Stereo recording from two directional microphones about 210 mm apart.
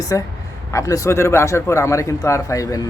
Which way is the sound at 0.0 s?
15° left (ahead or behind).